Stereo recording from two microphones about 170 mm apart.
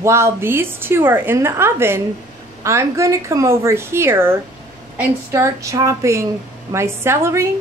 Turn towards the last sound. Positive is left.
turn(degrees=-15)  # may be behind; listen again after turning